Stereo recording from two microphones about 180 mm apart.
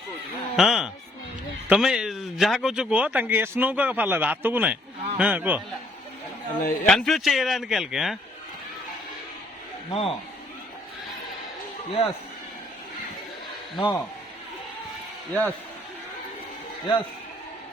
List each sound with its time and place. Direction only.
0.5 s speech: centre (ahead or behind)
6.8 s speech: centre (ahead or behind)
9.9 s speech: 30° left (ahead or behind)
11.9 s speech: 35° left (ahead or behind)
13.7 s a man's voice: 25° left (ahead or behind)
15.3 s speech: 10° left (ahead or behind)